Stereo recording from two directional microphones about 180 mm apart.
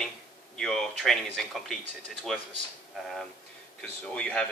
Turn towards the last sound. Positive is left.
turn(degrees=5)  # may be behind; listen again after turning